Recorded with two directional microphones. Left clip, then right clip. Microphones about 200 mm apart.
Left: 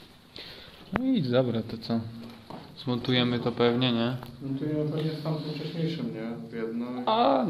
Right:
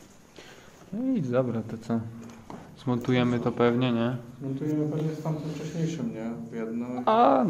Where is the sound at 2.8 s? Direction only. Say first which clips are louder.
Even; 10° right (ahead or behind).